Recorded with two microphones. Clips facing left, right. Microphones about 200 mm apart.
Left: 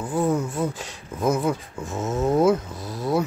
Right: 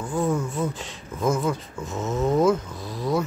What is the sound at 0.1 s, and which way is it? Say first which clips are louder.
Speech: left 2 dB; 15° left (ahead or behind).